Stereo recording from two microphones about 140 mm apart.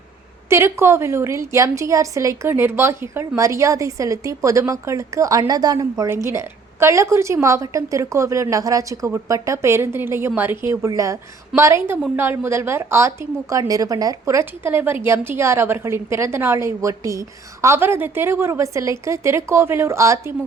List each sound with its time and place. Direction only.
0.5 s a woman's voice: 20° right (ahead or behind)